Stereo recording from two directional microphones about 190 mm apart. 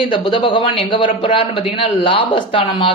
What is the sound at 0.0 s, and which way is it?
A man's voice, 25° left (ahead or behind).